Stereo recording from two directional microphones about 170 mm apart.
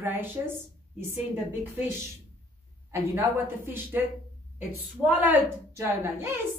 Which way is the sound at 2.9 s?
15° right (ahead or behind).